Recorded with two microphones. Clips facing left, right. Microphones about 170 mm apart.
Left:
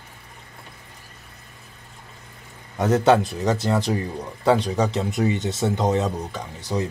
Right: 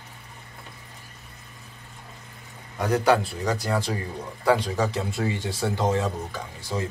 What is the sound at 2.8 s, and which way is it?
A man's voice, 25° left (ahead or behind).